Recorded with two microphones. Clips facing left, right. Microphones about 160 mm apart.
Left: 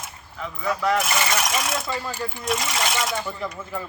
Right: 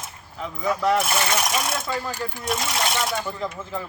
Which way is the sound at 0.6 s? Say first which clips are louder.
Right 2 dB; 15° right (ahead or behind).